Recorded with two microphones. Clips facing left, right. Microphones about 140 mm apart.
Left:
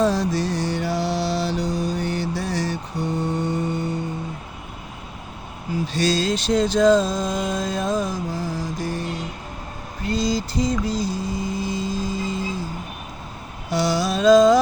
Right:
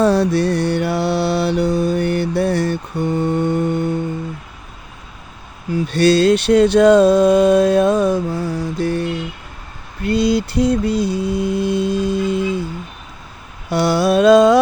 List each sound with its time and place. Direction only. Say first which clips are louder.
0.0 s mantra: right 6 dB; 65° right (ahead or behind)
5.7 s mantra: right 8 dB; 60° right (ahead or behind)
13.7 s mantra: right 6 dB; 60° right (ahead or behind)